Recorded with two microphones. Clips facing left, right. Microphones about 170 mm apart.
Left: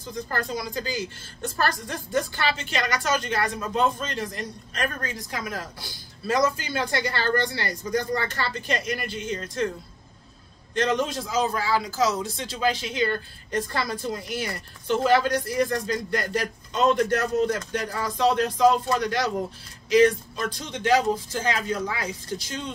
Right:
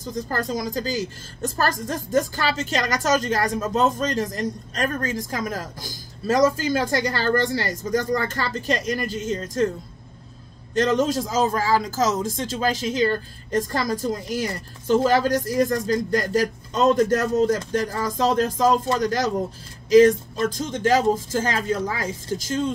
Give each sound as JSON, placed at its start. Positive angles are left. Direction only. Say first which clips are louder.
{"t": 0.0, "sound": "a woman's voice", "louder": "right 3 dB", "side_deg": -40}
{"t": 10.7, "sound": "a woman's voice", "louder": "right 4 dB", "side_deg": -45}